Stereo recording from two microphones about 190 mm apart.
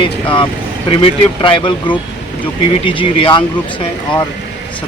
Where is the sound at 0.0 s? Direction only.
25° left (ahead or behind).